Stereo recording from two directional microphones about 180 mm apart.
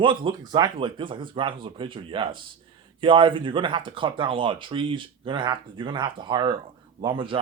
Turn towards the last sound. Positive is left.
turn(degrees=-30)  # may be behind; listen again after turning